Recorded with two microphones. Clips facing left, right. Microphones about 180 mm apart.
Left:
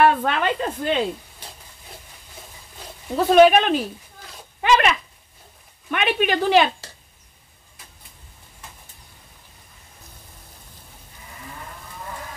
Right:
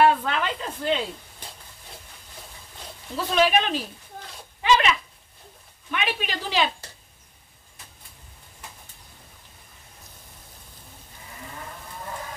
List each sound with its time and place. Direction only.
0.0 s speech: 55° left (ahead or behind)
3.2 s speech: 55° left (ahead or behind)